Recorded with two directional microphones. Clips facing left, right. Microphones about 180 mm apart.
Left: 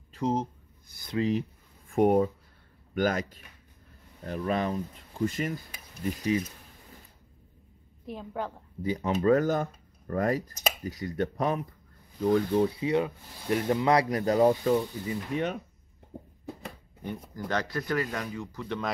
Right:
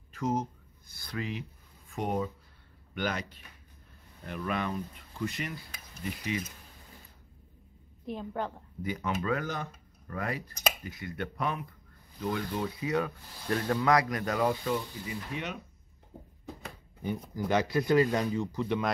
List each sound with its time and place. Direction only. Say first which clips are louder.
0.1 s speech: left 3 dB; 30° left (ahead or behind)
1.9 s speech: left 10 dB; 55° left (ahead or behind)
2.9 s speech: left 6 dB; 45° left (ahead or behind)
8.1 s a woman's voice: even; 5° left (ahead or behind)
8.8 s speech: left 7 dB; 35° left (ahead or behind)
12.4 s speech: left 9 dB; 30° left (ahead or behind)
17.3 s speech: right 3 dB; 10° right (ahead or behind)